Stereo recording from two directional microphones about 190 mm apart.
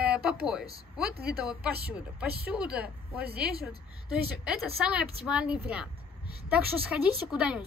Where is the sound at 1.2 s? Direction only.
5° right (ahead or behind).